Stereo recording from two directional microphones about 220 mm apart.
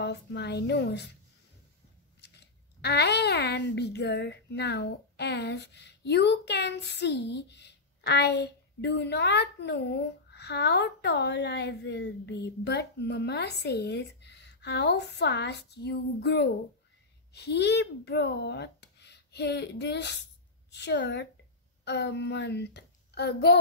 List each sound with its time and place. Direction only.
0.0 s speech: 50° left (ahead or behind)
2.2 s speech: 50° left (ahead or behind)